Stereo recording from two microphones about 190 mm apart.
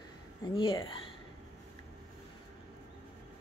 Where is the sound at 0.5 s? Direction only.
25° left (ahead or behind).